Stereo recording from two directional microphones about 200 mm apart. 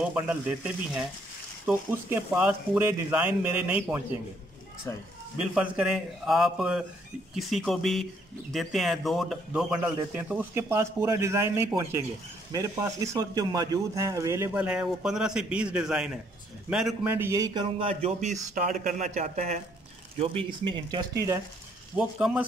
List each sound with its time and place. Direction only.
0.0 s speech: 5° right (ahead or behind)
4.9 s speech: 15° left (ahead or behind)
5.4 s speech: 5° right (ahead or behind); by 19.6 s 40° right (ahead or behind)
20.4 s speech: 25° right (ahead or behind)
21.9 s speech: 5° right (ahead or behind)